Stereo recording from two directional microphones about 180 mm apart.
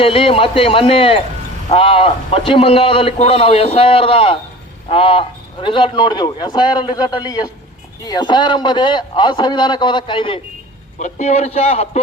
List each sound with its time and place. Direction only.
0.0 s a man's voice: 30° left (ahead or behind)
11.0 s a man's voice: 40° left (ahead or behind)